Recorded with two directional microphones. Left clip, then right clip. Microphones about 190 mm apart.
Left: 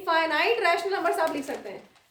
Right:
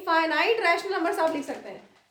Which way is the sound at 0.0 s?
5° right (ahead or behind).